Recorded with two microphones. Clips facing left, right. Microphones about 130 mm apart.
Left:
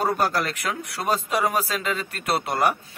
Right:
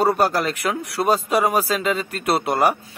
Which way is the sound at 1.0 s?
10° right (ahead or behind).